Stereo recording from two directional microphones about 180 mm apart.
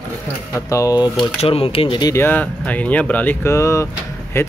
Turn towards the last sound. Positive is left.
turn(degrees=15)  # may be behind; listen again after turning